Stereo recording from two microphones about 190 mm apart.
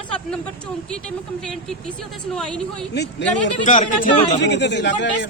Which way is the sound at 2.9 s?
60° left (ahead or behind).